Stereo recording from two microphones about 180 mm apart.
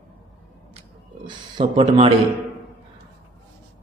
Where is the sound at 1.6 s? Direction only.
30° right (ahead or behind).